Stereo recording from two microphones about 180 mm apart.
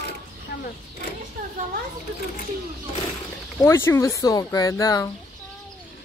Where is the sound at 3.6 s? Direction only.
15° left (ahead or behind).